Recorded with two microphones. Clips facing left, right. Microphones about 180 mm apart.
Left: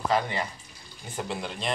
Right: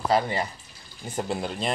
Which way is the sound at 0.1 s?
35° right (ahead or behind).